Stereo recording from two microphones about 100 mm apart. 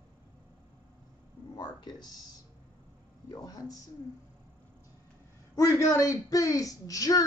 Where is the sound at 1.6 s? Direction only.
45° left (ahead or behind).